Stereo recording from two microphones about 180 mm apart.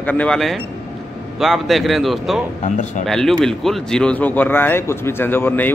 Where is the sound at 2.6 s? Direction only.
40° left (ahead or behind).